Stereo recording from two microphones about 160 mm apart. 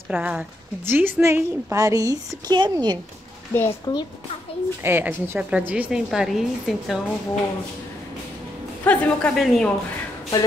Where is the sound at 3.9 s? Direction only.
25° left (ahead or behind).